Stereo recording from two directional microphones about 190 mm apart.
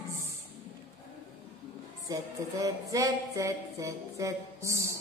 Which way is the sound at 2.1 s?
20° right (ahead or behind).